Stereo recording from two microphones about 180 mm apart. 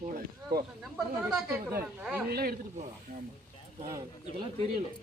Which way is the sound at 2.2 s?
60° right (ahead or behind).